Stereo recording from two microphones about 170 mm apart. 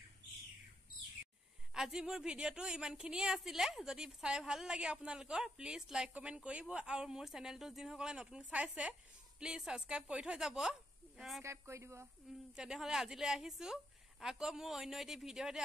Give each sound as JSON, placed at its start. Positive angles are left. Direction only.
{"t": 1.7, "sound": "speech", "side_deg": -5}
{"t": 11.4, "sound": "speech", "side_deg": -15}
{"t": 12.5, "sound": "speech", "side_deg": -5}